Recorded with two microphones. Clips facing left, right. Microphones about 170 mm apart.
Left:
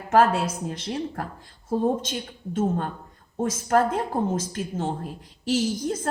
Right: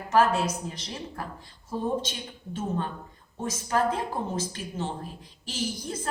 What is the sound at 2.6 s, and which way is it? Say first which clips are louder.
A woman's voice: left 6 dB; 50° left (ahead or behind).